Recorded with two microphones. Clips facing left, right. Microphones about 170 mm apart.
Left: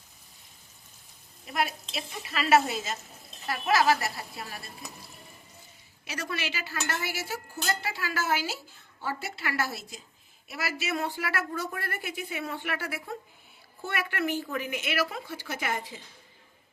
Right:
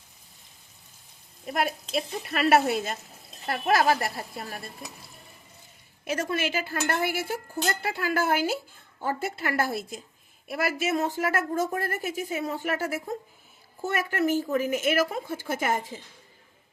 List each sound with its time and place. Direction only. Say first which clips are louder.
1.5 s a woman's voice: right 3 dB; 50° right (ahead or behind)
6.1 s a woman's voice: right 7 dB; 50° right (ahead or behind)